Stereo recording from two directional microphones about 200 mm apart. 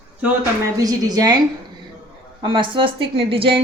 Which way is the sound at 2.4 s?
25° right (ahead or behind).